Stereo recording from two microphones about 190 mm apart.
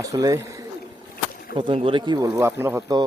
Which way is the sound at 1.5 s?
25° right (ahead or behind).